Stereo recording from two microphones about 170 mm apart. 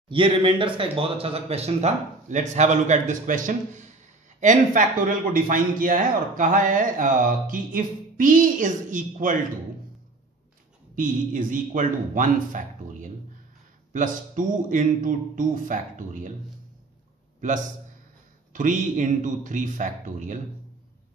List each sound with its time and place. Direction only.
0.1 s a man's voice: 30° right (ahead or behind); by 9.4 s 50° right (ahead or behind)
11.0 s a man's voice: 50° right (ahead or behind)
17.4 s a man's voice: 50° right (ahead or behind)